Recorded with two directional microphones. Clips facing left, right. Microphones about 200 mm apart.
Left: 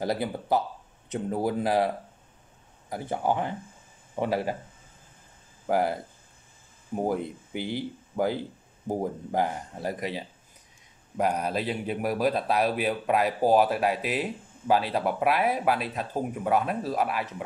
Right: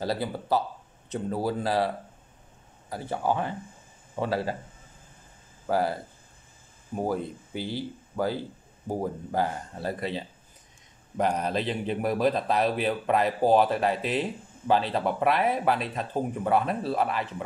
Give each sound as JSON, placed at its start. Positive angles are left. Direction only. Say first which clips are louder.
{"t": 0.0, "sound": "speech", "louder": "left 1 dB", "side_deg": 20}
{"t": 2.9, "sound": "speech", "louder": "left 1 dB", "side_deg": 15}
{"t": 5.7, "sound": "speech", "louder": "left 1 dB", "side_deg": 15}
{"t": 7.0, "sound": "speech", "louder": "left 1 dB", "side_deg": 20}